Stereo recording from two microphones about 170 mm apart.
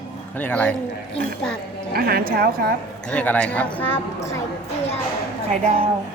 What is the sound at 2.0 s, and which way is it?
Speech, 65° right (ahead or behind).